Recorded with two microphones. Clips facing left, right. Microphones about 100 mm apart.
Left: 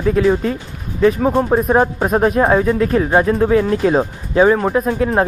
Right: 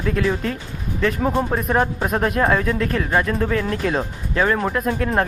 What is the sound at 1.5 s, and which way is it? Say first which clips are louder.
Speech: left 6 dB; 25° left (ahead or behind).